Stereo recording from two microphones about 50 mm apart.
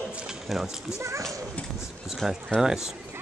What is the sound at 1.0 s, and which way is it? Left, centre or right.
Speech, right.